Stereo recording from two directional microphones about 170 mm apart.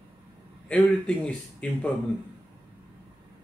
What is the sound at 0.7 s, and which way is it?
A man's voice, 5° left (ahead or behind).